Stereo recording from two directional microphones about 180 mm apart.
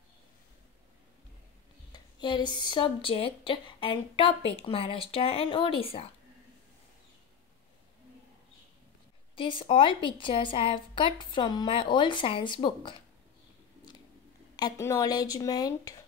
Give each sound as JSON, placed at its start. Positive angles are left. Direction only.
{"t": 1.9, "sound": "speech", "side_deg": 25}
{"t": 9.3, "sound": "speech", "side_deg": 30}
{"t": 14.6, "sound": "speech", "side_deg": 20}